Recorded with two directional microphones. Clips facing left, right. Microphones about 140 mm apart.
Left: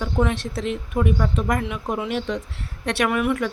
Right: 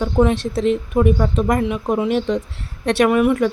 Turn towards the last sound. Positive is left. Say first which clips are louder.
# right 7 dB
turn(degrees=-30)  # may be behind; listen again after turning